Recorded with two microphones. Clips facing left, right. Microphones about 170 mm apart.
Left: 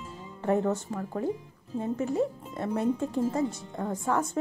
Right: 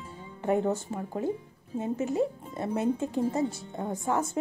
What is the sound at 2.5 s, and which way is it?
Speech, 25° right (ahead or behind).